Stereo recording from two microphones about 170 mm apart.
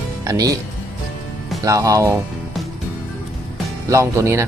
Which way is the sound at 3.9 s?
15° right (ahead or behind).